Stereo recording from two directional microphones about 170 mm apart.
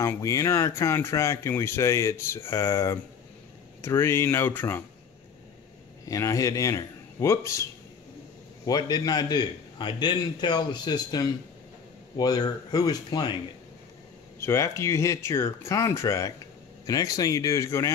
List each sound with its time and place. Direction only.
0.0 s speech: 20° left (ahead or behind)
6.0 s a man's voice: 20° left (ahead or behind)
8.6 s a man's voice: 25° left (ahead or behind)
14.4 s a man's voice: 15° left (ahead or behind)